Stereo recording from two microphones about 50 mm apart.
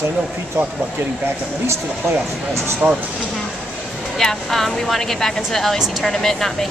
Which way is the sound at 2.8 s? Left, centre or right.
Right.